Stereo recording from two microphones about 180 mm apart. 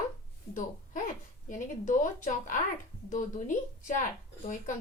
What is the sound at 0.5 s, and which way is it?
Speech, 45° left (ahead or behind).